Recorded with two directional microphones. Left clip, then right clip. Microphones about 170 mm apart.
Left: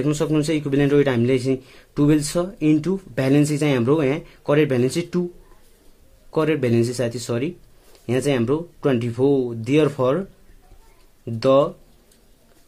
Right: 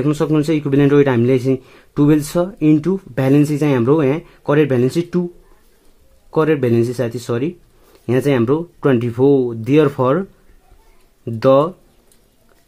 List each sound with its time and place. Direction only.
0.0 s a man's voice: 45° right (ahead or behind)
6.3 s a man's voice: 45° right (ahead or behind)
11.2 s a man's voice: 50° right (ahead or behind)